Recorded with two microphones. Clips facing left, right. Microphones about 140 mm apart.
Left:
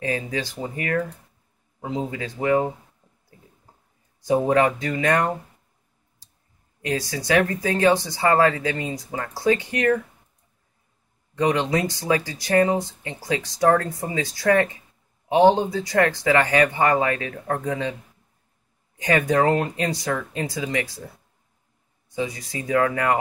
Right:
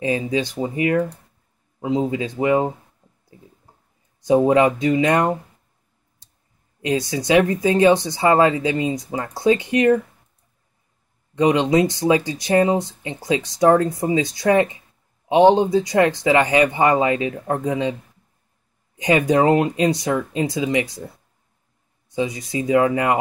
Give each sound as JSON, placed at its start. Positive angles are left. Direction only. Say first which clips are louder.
{"t": 0.0, "sound": "speech", "louder": "right 5 dB", "side_deg": -20}
{"t": 4.2, "sound": "speech", "louder": "right 4 dB", "side_deg": -20}
{"t": 6.8, "sound": "speech", "louder": "right 5 dB", "side_deg": -20}
{"t": 11.3, "sound": "speech", "louder": "right 5 dB", "side_deg": -20}
{"t": 18.9, "sound": "speech", "louder": "right 3 dB", "side_deg": -20}
{"t": 22.1, "sound": "speech", "louder": "right 5 dB", "side_deg": -20}